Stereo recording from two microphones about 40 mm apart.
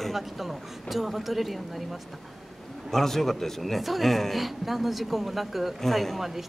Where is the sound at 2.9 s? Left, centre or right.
Centre.